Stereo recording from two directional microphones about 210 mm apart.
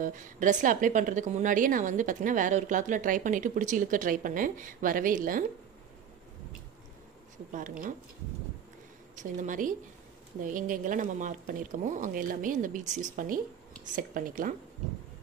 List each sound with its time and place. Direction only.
0.0 s a woman's voice: 40° right (ahead or behind)
9.1 s a woman's voice: 35° right (ahead or behind)